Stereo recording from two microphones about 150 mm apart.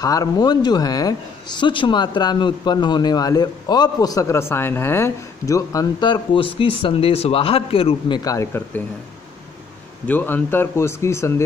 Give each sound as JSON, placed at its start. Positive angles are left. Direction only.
{"t": 0.0, "sound": "speech", "side_deg": 25}
{"t": 8.2, "sound": "speech", "side_deg": 20}
{"t": 10.0, "sound": "speech", "side_deg": 15}